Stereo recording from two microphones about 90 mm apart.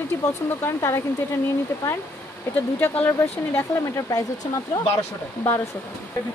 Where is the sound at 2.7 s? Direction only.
25° left (ahead or behind).